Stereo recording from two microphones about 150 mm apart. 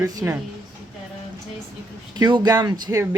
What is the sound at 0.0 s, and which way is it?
Speech, 20° right (ahead or behind).